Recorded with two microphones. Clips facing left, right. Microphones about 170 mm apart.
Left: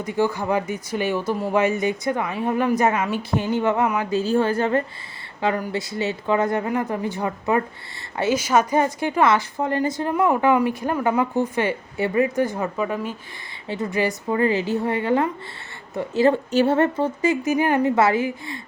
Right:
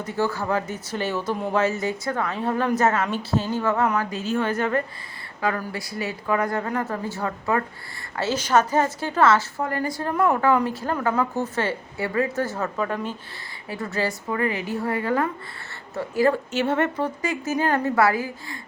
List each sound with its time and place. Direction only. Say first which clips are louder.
0.0 s a woman's voice: left 3 dB; 15° left (ahead or behind)
4.1 s a woman's voice: left 5 dB; 35° left (ahead or behind); by 13.1 s 10° left (ahead or behind)
13.7 s a woman's voice: left 4 dB; 20° left (ahead or behind)
16.5 s a woman's voice: left 5 dB; 35° left (ahead or behind)